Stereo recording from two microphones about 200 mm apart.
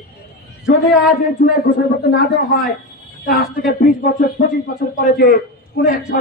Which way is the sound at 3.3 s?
50° left (ahead or behind).